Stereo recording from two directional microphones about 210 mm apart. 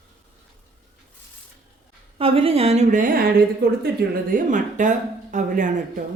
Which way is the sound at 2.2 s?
25° right (ahead or behind).